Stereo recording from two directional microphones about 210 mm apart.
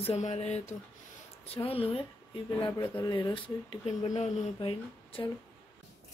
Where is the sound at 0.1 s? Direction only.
30° left (ahead or behind).